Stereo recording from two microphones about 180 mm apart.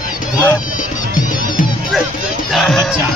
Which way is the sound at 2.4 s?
Centre (ahead or behind).